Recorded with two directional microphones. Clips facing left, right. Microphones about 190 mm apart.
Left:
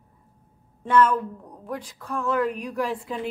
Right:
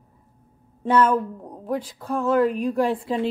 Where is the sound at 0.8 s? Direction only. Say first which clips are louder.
Right 1 dB; 30° right (ahead or behind).